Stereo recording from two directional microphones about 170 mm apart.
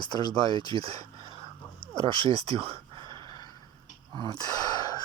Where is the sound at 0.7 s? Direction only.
35° right (ahead or behind).